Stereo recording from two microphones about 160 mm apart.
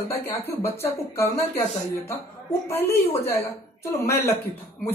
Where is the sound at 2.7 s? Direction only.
15° left (ahead or behind).